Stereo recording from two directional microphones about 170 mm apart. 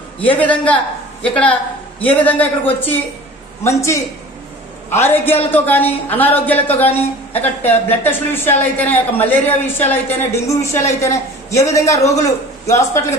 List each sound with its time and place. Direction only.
0.4 s speech: 10° left (ahead or behind)